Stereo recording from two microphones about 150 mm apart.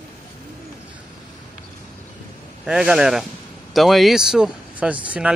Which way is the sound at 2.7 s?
5° right (ahead or behind).